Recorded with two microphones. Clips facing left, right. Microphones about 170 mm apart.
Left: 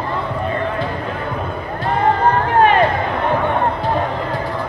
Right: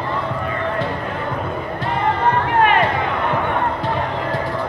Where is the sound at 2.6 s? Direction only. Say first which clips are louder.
Left 3 dB; 35° left (ahead or behind).